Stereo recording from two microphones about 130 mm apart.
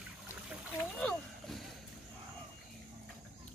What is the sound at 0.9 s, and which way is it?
Boat, 5° left (ahead or behind).